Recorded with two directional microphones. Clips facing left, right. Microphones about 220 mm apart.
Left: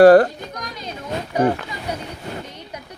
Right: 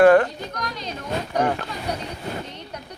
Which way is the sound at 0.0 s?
35° left (ahead or behind).